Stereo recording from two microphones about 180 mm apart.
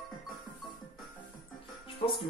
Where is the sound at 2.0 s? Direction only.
30° left (ahead or behind).